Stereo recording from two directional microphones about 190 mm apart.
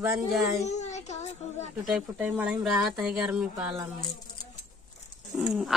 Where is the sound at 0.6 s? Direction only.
35° left (ahead or behind).